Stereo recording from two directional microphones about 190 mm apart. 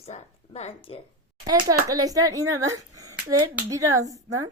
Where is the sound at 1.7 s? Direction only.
20° right (ahead or behind).